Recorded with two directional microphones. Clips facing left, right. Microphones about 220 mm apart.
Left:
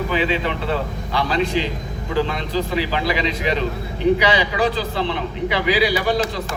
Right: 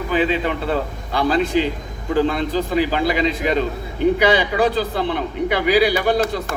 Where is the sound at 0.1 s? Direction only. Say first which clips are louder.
Right 6 dB; 45° right (ahead or behind).